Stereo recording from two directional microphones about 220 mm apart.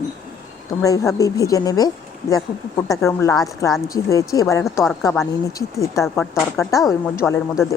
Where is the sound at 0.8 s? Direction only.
15° left (ahead or behind).